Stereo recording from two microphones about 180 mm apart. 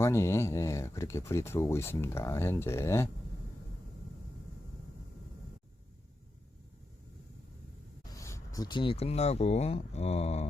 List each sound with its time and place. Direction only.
0.0 s speech: 15° left (ahead or behind)
8.1 s speech: 15° left (ahead or behind); by 10.4 s 35° left (ahead or behind)